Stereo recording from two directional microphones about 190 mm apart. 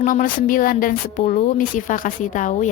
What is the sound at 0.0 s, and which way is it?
A woman's voice, 45° left (ahead or behind).